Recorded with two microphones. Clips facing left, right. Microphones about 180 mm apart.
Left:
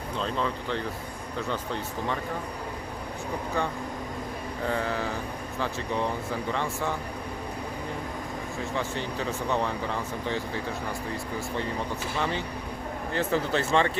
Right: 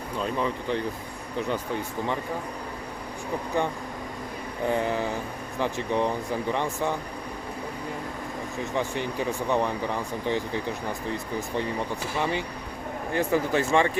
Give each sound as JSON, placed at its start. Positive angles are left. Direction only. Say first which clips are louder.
{"t": 0.2, "sound": "speech", "louder": "right 2 dB", "side_deg": -15}
{"t": 4.6, "sound": "speech", "louder": "right 4 dB", "side_deg": -15}
{"t": 8.7, "sound": "speech", "louder": "right 4 dB", "side_deg": -15}
{"t": 12.1, "sound": "speech", "louder": "right 2 dB", "side_deg": -15}